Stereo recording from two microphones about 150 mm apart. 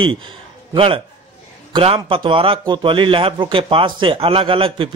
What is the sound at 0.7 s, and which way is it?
A man's voice, 35° right (ahead or behind).